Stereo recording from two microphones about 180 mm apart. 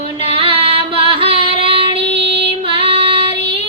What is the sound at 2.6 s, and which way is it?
Female singing, 30° right (ahead or behind).